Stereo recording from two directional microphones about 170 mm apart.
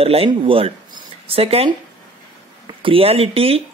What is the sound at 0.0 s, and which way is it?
Speech, 35° right (ahead or behind).